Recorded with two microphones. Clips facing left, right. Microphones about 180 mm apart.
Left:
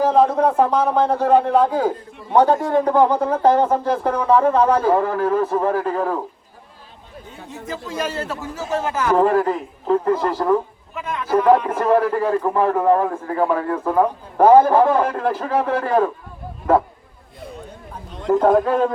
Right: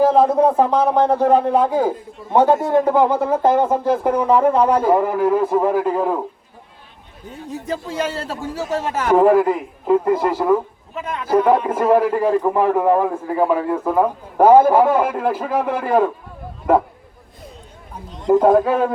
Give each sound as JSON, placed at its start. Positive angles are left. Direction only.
{"t": 0.0, "sound": "speech", "side_deg": -10}
{"t": 7.7, "sound": "a man's voice", "side_deg": -30}
{"t": 9.1, "sound": "speech", "side_deg": -10}
{"t": 18.3, "sound": "speech", "side_deg": -10}